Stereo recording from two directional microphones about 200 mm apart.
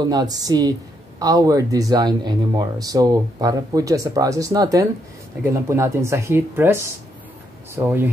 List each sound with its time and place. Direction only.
0.0 s speech: 20° right (ahead or behind)